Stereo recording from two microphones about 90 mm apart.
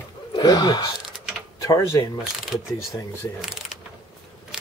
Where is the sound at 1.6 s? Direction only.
35° left (ahead or behind).